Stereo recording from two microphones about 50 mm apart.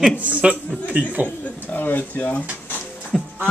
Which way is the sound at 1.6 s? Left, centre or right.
Left.